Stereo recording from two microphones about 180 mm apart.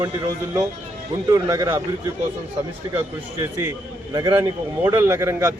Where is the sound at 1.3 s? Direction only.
20° right (ahead or behind).